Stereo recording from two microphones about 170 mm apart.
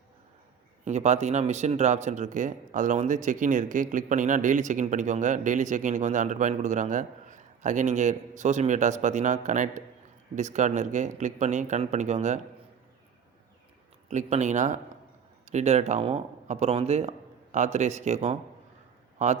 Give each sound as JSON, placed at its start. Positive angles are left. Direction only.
{"t": 0.9, "sound": "speech", "side_deg": -45}
{"t": 14.1, "sound": "speech", "side_deg": -45}